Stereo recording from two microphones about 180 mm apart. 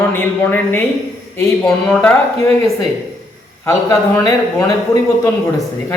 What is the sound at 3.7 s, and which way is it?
Speech, 20° left (ahead or behind).